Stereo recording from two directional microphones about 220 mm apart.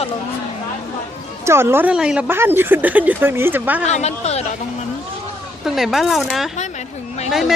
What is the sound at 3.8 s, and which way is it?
Speech, 30° left (ahead or behind).